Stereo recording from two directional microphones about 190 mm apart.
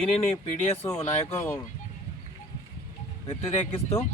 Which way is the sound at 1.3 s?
10° left (ahead or behind).